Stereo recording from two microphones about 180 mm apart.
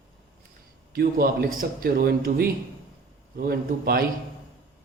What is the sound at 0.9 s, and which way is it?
Speech, 55° right (ahead or behind).